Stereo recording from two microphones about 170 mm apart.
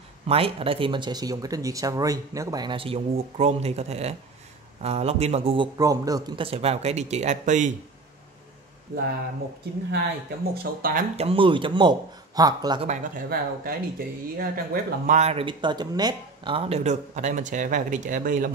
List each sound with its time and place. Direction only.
0.3 s speech: 35° right (ahead or behind)
5.8 s speech: 20° right (ahead or behind); by 7.7 s 45° right (ahead or behind)
8.9 s speech: 55° right (ahead or behind)
10.5 s speech: 65° right (ahead or behind)
11.1 s speech: 35° right (ahead or behind)
12.8 s speech: 45° right (ahead or behind)
13.3 s speech: 60° right (ahead or behind)
15.1 s speech: 35° right (ahead or behind); by 18.5 s 50° right (ahead or behind)